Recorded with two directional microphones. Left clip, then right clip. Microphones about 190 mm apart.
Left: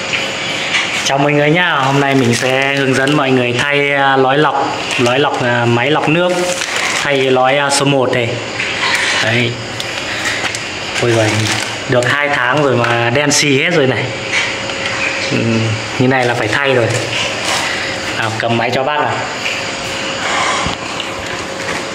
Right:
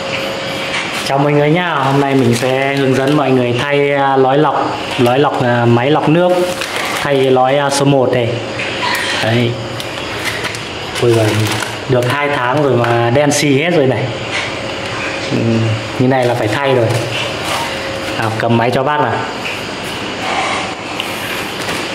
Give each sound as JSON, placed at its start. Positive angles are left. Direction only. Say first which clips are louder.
{"t": 1.0, "sound": "speech", "louder": "right 2 dB", "side_deg": -5}
{"t": 5.1, "sound": "speech", "louder": "right 2 dB", "side_deg": -25}
{"t": 11.9, "sound": "speech", "louder": "left 1 dB", "side_deg": -5}
{"t": 16.1, "sound": "speech", "louder": "even", "side_deg": -5}
{"t": 18.4, "sound": "speech", "louder": "right 2 dB", "side_deg": -60}